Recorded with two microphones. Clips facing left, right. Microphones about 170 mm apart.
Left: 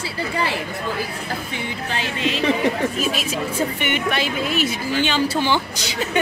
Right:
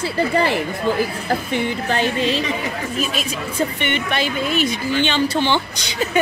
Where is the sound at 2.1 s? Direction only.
35° right (ahead or behind).